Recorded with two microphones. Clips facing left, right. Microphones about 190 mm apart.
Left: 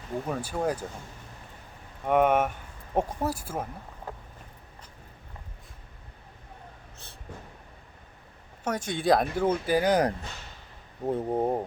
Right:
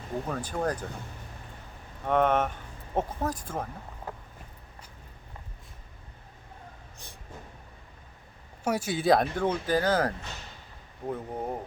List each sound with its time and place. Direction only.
0.3 s speech: 10° left (ahead or behind)
2.0 s speech: 10° left (ahead or behind)
8.6 s speech: 10° right (ahead or behind); by 10.2 s 15° left (ahead or behind)
11.0 s speech: 35° left (ahead or behind)